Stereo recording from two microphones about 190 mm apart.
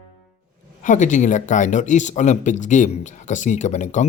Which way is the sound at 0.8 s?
40° left (ahead or behind).